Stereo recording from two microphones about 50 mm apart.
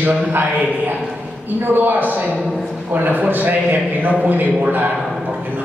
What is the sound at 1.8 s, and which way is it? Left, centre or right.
A man's voice, right.